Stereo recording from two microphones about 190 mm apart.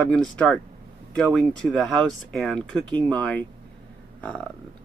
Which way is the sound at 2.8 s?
25° right (ahead or behind).